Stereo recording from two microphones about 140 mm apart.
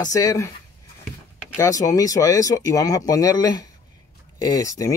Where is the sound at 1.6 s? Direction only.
25° left (ahead or behind).